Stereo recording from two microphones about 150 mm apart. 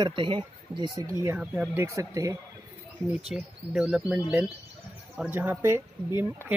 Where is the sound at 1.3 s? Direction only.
10° right (ahead or behind).